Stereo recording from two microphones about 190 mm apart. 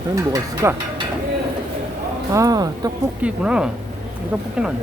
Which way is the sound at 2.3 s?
20° right (ahead or behind).